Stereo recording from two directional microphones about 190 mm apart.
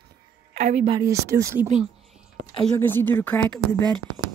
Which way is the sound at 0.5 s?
35° right (ahead or behind).